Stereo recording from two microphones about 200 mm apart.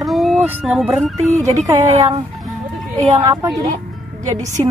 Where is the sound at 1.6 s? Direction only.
25° right (ahead or behind).